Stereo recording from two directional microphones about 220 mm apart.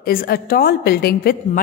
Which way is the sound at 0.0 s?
40° left (ahead or behind).